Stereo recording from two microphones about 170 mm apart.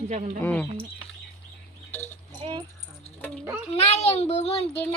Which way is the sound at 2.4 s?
25° right (ahead or behind).